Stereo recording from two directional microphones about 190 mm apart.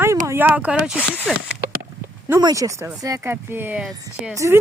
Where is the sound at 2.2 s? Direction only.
15° right (ahead or behind).